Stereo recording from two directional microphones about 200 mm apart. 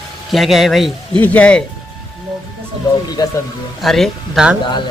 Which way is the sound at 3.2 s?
20° left (ahead or behind).